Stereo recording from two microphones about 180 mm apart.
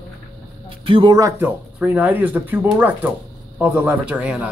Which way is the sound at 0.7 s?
30° right (ahead or behind).